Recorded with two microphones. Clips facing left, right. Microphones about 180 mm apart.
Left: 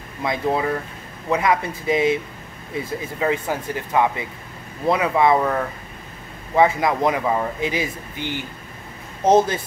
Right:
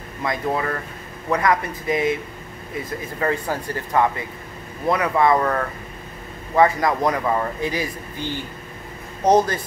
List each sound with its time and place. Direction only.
0.2 s speech: 15° left (ahead or behind)
1.9 s speech: 25° left (ahead or behind)
3.2 s speech: 15° left (ahead or behind)